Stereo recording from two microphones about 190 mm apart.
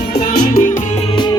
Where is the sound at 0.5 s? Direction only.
40° left (ahead or behind).